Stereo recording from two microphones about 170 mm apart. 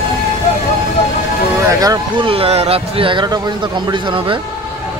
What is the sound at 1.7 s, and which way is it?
Speech, 20° right (ahead or behind).